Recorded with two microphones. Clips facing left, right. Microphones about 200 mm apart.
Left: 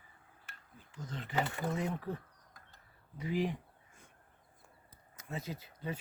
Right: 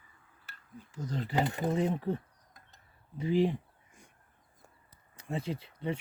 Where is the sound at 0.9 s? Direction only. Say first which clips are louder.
Right 8 dB; 40° right (ahead or behind).